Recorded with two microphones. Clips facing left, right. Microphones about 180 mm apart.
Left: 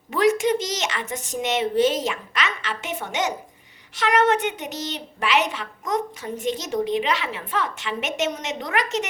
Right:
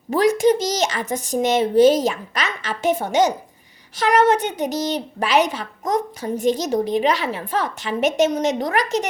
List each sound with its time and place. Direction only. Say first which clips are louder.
0.1 s a woman's voice: right 4 dB; 40° right (ahead or behind)